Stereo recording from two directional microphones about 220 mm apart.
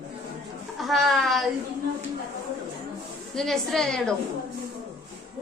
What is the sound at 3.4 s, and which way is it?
Speech, centre (ahead or behind).